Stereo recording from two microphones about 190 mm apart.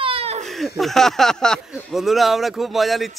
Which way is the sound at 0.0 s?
30° right (ahead or behind).